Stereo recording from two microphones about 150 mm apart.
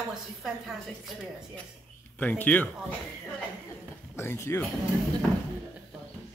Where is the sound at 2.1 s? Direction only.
10° left (ahead or behind).